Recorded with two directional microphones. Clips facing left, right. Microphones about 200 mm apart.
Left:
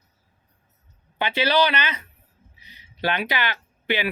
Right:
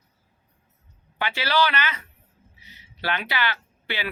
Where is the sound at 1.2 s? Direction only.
20° left (ahead or behind).